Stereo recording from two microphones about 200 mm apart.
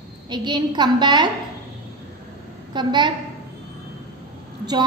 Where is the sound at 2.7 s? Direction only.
20° right (ahead or behind).